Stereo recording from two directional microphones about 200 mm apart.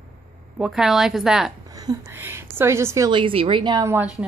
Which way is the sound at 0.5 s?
Centre (ahead or behind).